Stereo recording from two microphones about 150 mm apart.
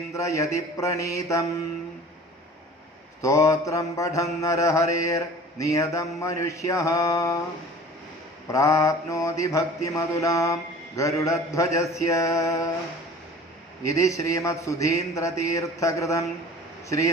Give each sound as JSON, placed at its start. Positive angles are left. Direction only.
{"t": 0.1, "sound": "mantra", "side_deg": 20}
{"t": 3.2, "sound": "mantra", "side_deg": 20}
{"t": 8.4, "sound": "mantra", "side_deg": 20}
{"t": 13.8, "sound": "mantra", "side_deg": 20}